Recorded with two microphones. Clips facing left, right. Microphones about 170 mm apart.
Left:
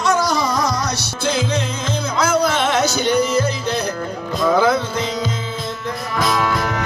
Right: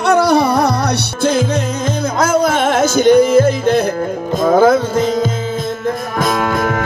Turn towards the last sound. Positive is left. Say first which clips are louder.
# right 4 dB
turn(degrees=-50)  # may be behind; listen again after turning